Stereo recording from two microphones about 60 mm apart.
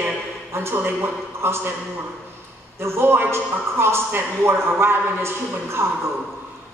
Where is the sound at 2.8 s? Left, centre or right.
Right.